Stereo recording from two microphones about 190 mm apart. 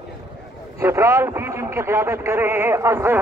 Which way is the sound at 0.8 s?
15° right (ahead or behind).